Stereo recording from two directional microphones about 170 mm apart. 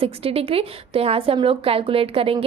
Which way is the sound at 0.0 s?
35° right (ahead or behind).